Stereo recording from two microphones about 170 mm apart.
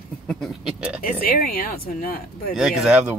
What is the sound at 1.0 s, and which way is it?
Speech, 60° left (ahead or behind).